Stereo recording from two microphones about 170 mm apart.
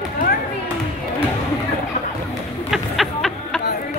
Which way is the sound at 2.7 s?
Centre (ahead or behind).